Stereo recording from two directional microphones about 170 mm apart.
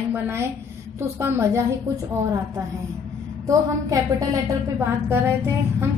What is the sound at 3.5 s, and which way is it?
A woman's voice, 20° right (ahead or behind).